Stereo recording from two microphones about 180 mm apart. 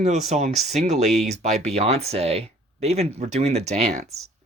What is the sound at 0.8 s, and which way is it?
Speech, 40° right (ahead or behind).